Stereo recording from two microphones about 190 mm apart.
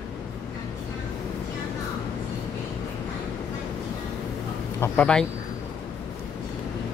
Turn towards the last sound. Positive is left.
turn(degrees=5)  # may be behind; listen again after turning